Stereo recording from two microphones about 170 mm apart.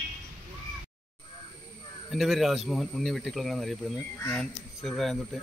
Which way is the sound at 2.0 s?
Centre (ahead or behind).